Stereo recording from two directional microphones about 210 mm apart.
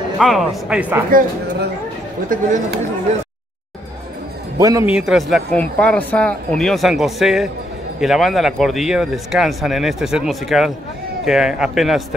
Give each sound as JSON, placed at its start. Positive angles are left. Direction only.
{"t": 0.2, "sound": "speech", "side_deg": 0}
{"t": 2.2, "sound": "speech", "side_deg": -40}
{"t": 4.6, "sound": "a man's voice", "side_deg": -15}
{"t": 4.9, "sound": "speech", "side_deg": 0}